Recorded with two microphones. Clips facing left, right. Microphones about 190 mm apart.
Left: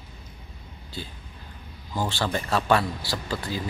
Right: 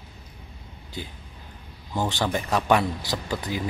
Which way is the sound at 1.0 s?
15° right (ahead or behind).